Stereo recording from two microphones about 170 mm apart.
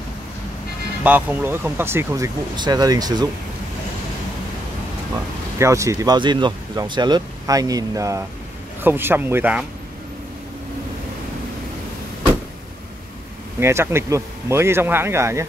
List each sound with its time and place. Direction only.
1.0 s speech: 10° right (ahead or behind)
5.6 s speech: 20° right (ahead or behind)
13.6 s speech: 15° right (ahead or behind)